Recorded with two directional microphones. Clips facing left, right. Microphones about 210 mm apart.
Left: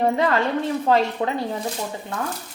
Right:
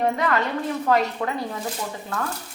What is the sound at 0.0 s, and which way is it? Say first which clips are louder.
A woman's voice: left 3 dB; 30° left (ahead or behind).